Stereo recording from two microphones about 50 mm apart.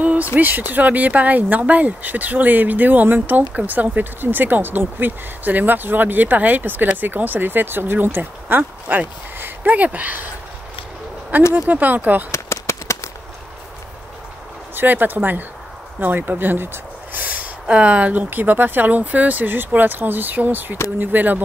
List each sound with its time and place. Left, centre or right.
0.0 s speech: right
11.5 s speech: right
12.3 s a sound: left
14.8 s speech: right
17.2 s a sound: right
18.2 s speech: right